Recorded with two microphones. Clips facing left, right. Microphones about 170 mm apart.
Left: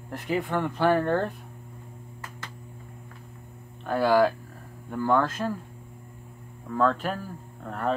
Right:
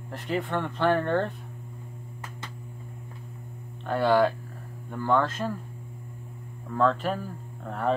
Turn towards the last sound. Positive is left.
turn(degrees=0)  # may be behind; listen again after turning